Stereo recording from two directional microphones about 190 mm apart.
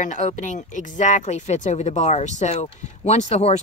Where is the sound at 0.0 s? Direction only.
40° left (ahead or behind).